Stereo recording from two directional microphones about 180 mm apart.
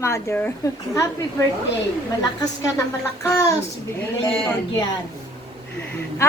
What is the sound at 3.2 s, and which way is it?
Speech, 15° left (ahead or behind).